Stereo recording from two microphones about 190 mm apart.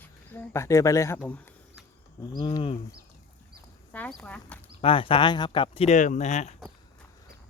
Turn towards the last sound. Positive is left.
turn(degrees=35)  # may be behind; listen again after turning